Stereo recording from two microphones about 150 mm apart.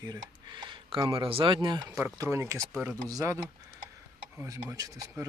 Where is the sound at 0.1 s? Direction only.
30° right (ahead or behind).